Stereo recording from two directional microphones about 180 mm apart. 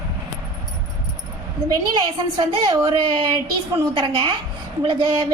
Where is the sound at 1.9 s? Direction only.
25° right (ahead or behind).